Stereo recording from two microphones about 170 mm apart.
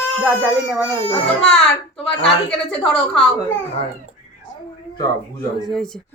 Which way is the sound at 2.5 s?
5° left (ahead or behind).